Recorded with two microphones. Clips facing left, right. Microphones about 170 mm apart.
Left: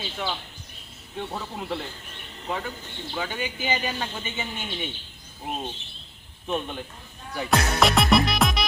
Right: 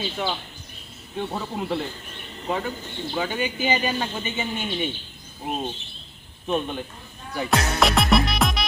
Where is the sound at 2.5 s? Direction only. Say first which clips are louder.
Right 4 dB; 20° right (ahead or behind).